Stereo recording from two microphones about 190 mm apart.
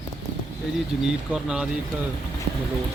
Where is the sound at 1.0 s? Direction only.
5° right (ahead or behind).